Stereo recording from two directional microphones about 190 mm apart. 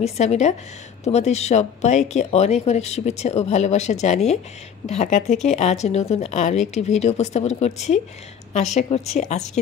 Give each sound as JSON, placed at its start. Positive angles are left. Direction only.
{"t": 0.0, "sound": "a woman's voice", "side_deg": 35}